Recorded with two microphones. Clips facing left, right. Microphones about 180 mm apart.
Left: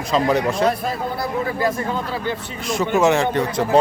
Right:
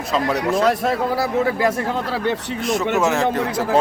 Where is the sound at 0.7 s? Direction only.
75° right (ahead or behind).